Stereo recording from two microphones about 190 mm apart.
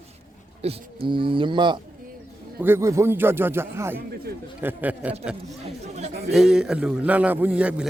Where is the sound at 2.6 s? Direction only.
15° right (ahead or behind).